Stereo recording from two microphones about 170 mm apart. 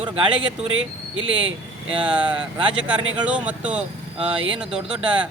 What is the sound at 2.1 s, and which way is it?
Speech, 5° right (ahead or behind).